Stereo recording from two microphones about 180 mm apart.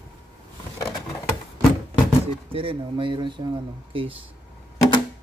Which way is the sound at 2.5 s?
30° right (ahead or behind).